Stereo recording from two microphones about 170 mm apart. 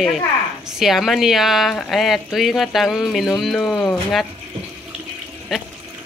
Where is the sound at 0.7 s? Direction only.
Centre (ahead or behind).